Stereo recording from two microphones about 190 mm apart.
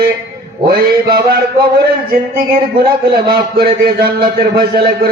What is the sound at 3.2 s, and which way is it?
Speech, 55° right (ahead or behind).